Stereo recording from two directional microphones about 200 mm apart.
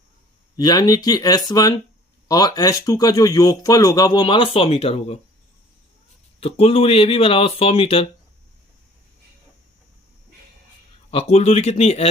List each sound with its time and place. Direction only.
0.5 s a man's voice: 20° left (ahead or behind)
6.4 s a man's voice: 30° left (ahead or behind)
11.1 s speech: 30° left (ahead or behind)